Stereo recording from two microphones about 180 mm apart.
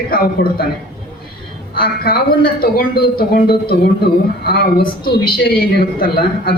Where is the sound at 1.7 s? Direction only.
55° left (ahead or behind).